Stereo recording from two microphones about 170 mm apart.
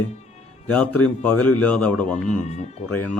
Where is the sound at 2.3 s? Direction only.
40° left (ahead or behind).